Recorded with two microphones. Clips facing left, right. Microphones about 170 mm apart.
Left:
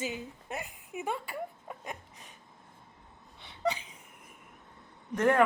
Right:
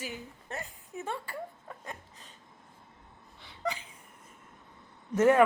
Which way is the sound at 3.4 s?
20° left (ahead or behind).